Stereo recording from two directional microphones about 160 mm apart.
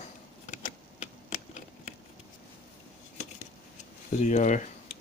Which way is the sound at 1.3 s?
45° left (ahead or behind).